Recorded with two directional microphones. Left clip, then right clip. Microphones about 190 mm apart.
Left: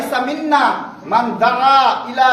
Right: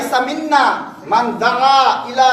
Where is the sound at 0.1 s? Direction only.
20° left (ahead or behind).